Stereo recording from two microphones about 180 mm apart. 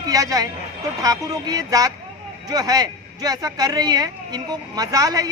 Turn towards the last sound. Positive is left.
turn(degrees=-20)  # may be behind; listen again after turning